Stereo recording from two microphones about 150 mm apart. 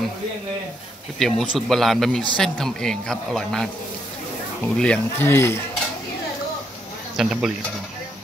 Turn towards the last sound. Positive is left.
turn(degrees=-5)  # may be behind; listen again after turning